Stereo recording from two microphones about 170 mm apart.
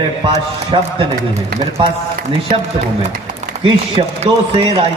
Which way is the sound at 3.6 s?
30° right (ahead or behind).